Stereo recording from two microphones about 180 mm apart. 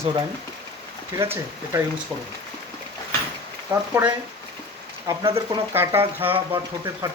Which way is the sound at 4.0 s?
15° right (ahead or behind).